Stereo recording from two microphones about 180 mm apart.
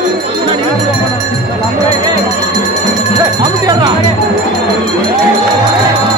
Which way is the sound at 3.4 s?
25° right (ahead or behind).